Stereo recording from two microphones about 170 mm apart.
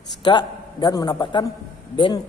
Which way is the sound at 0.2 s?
25° left (ahead or behind).